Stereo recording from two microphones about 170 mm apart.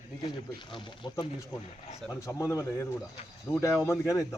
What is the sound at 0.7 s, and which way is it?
Speech, 25° left (ahead or behind).